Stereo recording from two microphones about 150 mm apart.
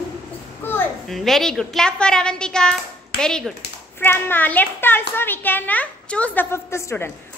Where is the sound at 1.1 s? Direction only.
Centre (ahead or behind).